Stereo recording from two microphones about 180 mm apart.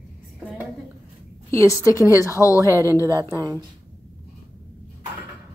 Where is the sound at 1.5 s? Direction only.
15° left (ahead or behind).